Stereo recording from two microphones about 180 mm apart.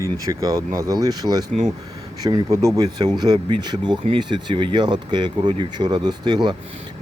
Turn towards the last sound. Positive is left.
turn(degrees=-25)  # may be behind; listen again after turning